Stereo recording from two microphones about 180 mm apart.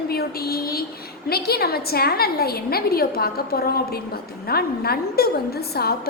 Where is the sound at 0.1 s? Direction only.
60° left (ahead or behind).